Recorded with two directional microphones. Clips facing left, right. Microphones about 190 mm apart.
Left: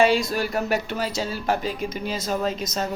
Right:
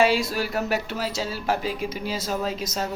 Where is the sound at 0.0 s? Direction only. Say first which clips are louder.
Left 2 dB; 5° right (ahead or behind).